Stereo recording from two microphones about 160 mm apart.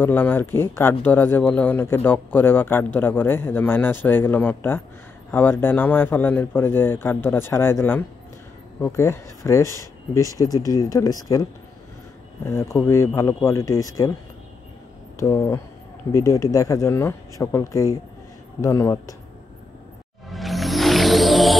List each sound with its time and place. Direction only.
0.0 s speech: 10° left (ahead or behind)
12.4 s speech: 15° left (ahead or behind)
15.1 s speech: 15° left (ahead or behind)
20.2 s music: centre (ahead or behind)